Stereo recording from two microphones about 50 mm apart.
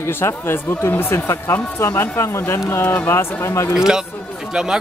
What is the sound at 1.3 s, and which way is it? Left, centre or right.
Speech, left.